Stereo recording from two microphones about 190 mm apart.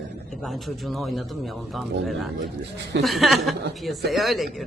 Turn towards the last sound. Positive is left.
turn(degrees=0)  # may be behind; listen again after turning